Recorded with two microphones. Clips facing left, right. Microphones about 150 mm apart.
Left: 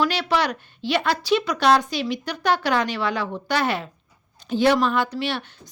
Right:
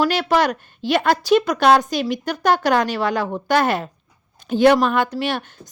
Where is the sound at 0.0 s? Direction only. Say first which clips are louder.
Right 4 dB; 45° right (ahead or behind).